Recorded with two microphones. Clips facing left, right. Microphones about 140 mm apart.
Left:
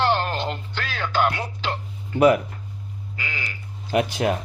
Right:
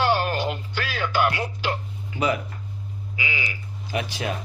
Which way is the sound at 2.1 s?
50° left (ahead or behind).